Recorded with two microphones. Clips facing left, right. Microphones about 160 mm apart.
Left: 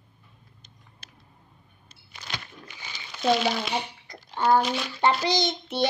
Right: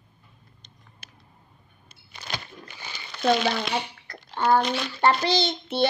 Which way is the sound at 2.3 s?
50° right (ahead or behind).